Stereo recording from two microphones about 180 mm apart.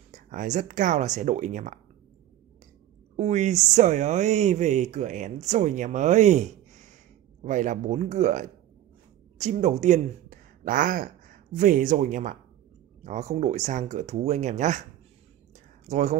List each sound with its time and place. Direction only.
0.1 s speech: 45° right (ahead or behind)
3.2 s speech: 40° right (ahead or behind)
15.9 s speech: 40° right (ahead or behind)